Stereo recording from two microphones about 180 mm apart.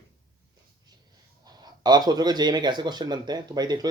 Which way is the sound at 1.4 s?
20° right (ahead or behind).